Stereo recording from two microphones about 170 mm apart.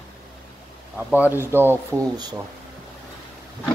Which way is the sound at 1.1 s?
10° right (ahead or behind).